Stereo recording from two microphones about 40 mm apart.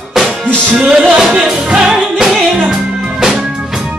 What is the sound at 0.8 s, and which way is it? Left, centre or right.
Music, centre.